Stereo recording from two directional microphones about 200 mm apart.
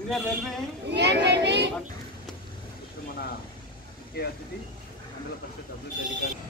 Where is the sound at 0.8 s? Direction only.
60° right (ahead or behind).